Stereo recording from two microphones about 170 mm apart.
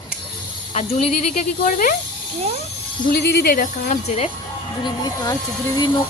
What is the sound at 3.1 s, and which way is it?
Speech, 70° left (ahead or behind).